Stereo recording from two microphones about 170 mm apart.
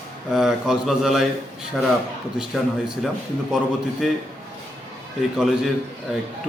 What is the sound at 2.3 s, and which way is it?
A man's voice, centre (ahead or behind).